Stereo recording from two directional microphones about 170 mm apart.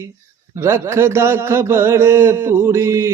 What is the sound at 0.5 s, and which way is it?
Speech, 15° right (ahead or behind).